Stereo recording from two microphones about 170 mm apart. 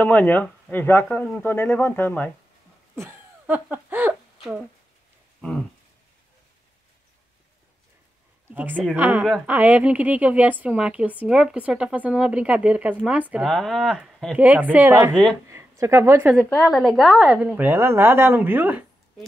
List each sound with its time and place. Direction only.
0.0 s speech: 10° left (ahead or behind)
3.0 s a sound: 10° right (ahead or behind)
8.5 s a woman's voice: 10° right (ahead or behind)
14.3 s a woman's voice: 10° right (ahead or behind)
16.4 s a woman's voice: 5° left (ahead or behind)